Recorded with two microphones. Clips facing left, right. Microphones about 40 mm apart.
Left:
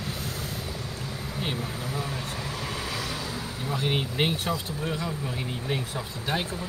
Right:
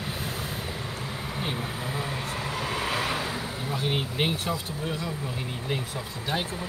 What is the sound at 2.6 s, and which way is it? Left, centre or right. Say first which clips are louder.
Vehicle: right 7 dB; right.